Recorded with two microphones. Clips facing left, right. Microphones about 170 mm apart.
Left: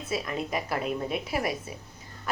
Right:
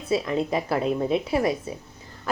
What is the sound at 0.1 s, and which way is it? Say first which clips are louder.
Speech: right 7 dB; 25° right (ahead or behind).